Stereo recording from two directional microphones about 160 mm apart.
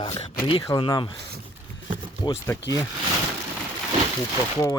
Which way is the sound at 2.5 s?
15° left (ahead or behind).